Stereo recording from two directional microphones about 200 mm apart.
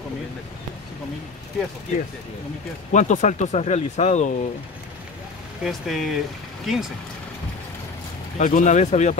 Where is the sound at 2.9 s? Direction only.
35° left (ahead or behind).